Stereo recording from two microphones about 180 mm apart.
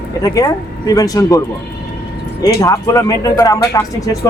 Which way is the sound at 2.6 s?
20° left (ahead or behind).